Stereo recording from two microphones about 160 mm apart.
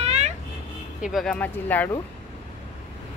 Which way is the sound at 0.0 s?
40° right (ahead or behind).